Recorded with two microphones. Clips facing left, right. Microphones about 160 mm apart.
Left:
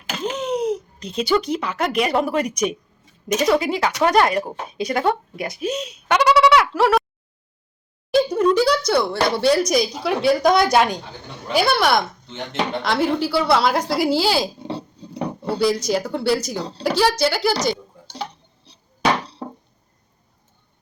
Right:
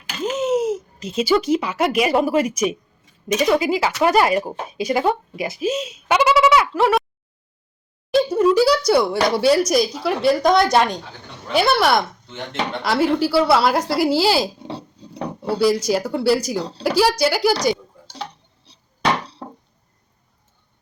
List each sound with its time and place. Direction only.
0.3 s speech: 5° right (ahead or behind)
8.1 s speech: 5° right (ahead or behind)
18.7 s a sound: centre (ahead or behind)